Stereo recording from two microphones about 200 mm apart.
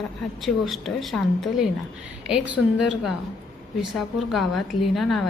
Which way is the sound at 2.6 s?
90° left.